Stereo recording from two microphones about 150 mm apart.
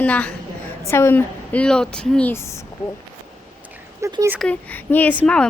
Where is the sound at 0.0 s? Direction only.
10° left (ahead or behind).